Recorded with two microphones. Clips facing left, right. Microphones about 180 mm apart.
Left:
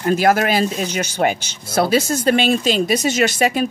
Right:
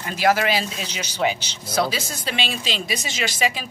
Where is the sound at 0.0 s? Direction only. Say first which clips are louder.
Left 5 dB; 50° left (ahead or behind).